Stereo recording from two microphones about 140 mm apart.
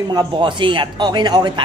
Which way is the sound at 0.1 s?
30° right (ahead or behind).